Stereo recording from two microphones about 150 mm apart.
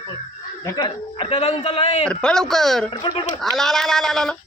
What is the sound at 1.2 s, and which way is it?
Speech, 40° left (ahead or behind).